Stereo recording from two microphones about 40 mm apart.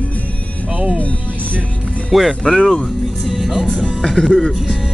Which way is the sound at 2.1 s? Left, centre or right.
Centre.